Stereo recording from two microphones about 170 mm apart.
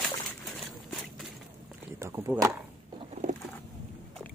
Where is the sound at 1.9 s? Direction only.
15° right (ahead or behind).